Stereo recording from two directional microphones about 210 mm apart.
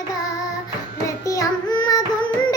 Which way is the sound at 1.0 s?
15° left (ahead or behind).